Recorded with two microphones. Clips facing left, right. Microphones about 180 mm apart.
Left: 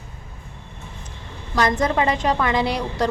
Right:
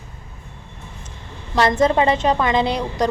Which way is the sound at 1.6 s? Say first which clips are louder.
Right 4 dB; 25° right (ahead or behind).